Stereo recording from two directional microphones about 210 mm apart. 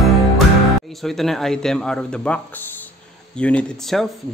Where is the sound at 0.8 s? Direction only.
Centre (ahead or behind).